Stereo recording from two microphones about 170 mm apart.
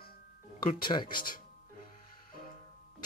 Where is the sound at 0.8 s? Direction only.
25° left (ahead or behind).